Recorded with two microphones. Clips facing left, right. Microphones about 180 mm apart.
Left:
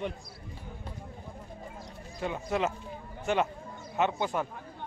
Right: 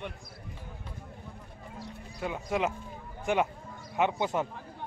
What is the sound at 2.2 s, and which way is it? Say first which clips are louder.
A man's voice: even; 10° right (ahead or behind).